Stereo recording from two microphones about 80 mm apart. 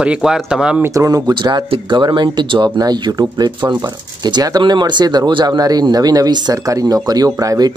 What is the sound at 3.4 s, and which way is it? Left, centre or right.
Speech, right.